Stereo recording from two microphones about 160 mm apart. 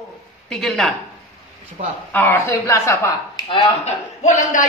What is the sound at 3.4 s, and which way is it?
Speech, 45° left (ahead or behind).